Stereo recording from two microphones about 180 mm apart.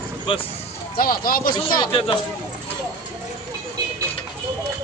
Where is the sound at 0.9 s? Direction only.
55° left (ahead or behind).